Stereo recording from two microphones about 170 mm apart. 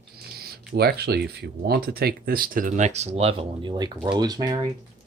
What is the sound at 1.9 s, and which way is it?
Speech, 60° right (ahead or behind).